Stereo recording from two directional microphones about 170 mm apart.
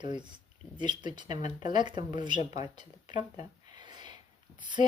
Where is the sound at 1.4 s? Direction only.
45° left (ahead or behind).